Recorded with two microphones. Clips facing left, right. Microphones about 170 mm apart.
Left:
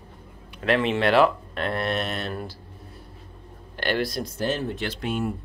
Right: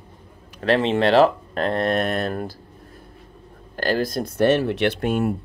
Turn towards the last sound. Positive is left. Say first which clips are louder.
# right 7 dB
turn(degrees=-55)  # may be behind; listen again after turning